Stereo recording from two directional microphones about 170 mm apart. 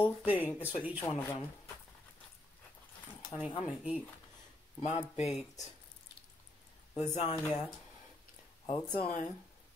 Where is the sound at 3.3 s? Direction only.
5° right (ahead or behind).